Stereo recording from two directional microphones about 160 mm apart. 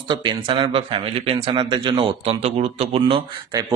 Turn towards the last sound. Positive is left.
turn(degrees=-30)  # may be behind; listen again after turning